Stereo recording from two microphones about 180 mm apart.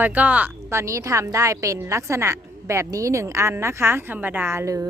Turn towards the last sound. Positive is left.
turn(degrees=-15)  # may be behind; listen again after turning